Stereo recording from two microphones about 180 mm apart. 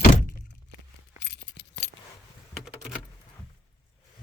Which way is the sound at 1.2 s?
70° left (ahead or behind).